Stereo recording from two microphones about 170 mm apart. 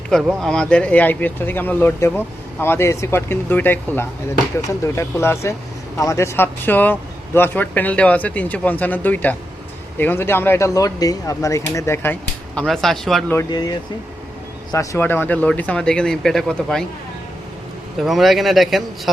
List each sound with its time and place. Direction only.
0.1 s speech: centre (ahead or behind); by 12.1 s 15° left (ahead or behind)
12.5 s speech: centre (ahead or behind)
13.3 s speech: 25° left (ahead or behind); by 16.8 s 5° left (ahead or behind)
18.0 s speech: centre (ahead or behind)